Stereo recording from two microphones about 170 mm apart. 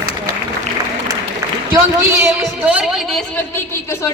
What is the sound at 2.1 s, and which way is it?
Speech, 10° right (ahead or behind).